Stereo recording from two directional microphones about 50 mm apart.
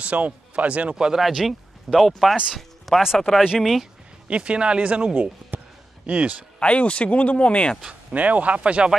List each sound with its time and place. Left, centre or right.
0.0 s speech: right
0.9 s speech: centre
1.2 s speech: centre
2.5 s a sound: centre
3.2 s speech: centre
4.3 s speech: right
5.5 s a sound: right
6.0 s speech: right
6.6 s speech: left
8.1 s speech: right